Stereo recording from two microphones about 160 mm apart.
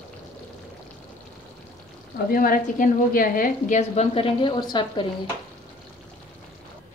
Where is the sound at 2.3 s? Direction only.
60° left (ahead or behind); by 5.1 s 30° left (ahead or behind).